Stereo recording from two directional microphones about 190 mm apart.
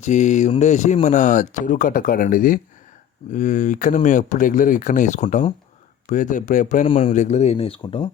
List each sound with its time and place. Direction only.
0.0 s speech: 40° left (ahead or behind)